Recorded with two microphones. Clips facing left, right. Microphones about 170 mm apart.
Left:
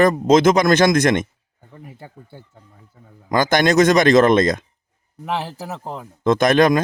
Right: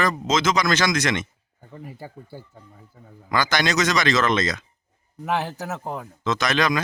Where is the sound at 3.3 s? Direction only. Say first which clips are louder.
Left 7 dB; 50° left (ahead or behind).